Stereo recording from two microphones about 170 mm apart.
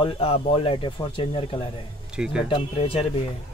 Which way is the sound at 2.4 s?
30° left (ahead or behind).